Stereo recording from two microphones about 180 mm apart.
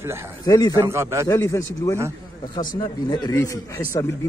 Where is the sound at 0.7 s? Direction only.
15° right (ahead or behind).